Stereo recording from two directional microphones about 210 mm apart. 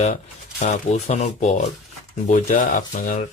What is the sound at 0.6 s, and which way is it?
Speech, 35° left (ahead or behind).